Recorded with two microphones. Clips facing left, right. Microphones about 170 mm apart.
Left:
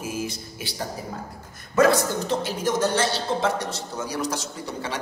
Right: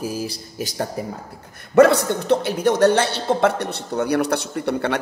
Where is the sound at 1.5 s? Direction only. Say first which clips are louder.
Right 6 dB; 65° right (ahead or behind).